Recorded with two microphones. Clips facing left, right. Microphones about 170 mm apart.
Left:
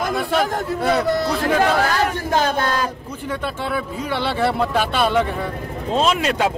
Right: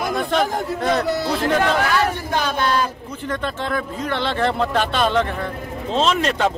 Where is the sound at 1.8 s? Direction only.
40° left (ahead or behind).